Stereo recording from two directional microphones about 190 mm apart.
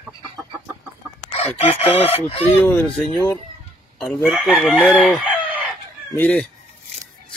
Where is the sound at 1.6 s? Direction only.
30° left (ahead or behind).